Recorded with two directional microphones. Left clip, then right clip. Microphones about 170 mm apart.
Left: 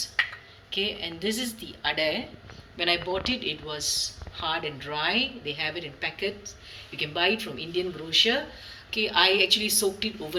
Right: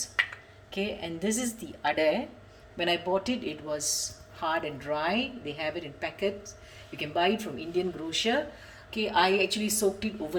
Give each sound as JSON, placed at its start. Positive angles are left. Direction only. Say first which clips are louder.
{"t": 0.8, "sound": "a woman's voice", "louder": "left 3 dB", "side_deg": -50}